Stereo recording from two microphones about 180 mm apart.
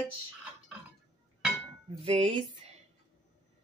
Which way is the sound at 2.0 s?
35° right (ahead or behind).